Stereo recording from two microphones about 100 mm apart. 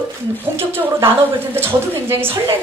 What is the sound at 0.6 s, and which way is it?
A woman's voice, 25° right (ahead or behind).